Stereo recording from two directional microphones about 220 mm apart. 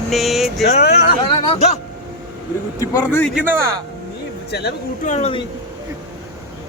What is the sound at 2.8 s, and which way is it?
Speech, 10° left (ahead or behind).